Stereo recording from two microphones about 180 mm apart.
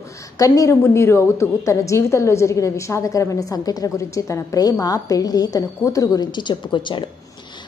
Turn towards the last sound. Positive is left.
turn(degrees=25)  # may be behind; listen again after turning